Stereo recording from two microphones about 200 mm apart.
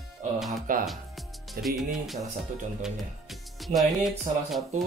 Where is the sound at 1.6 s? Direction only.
Centre (ahead or behind).